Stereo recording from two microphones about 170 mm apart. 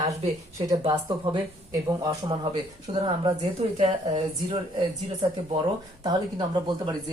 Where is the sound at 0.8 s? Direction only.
30° right (ahead or behind).